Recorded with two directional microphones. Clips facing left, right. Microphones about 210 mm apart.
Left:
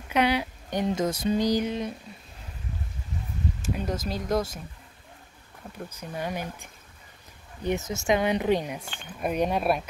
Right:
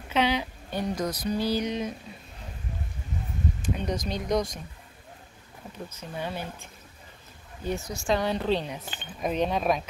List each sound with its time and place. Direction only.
0.1 s speech: 10° left (ahead or behind)
1.6 s speech: 5° left (ahead or behind)
3.7 s speech: 5° left (ahead or behind)
5.9 s speech: 10° left (ahead or behind)